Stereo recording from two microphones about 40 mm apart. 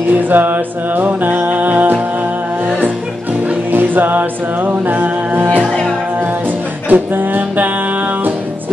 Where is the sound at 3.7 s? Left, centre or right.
Right.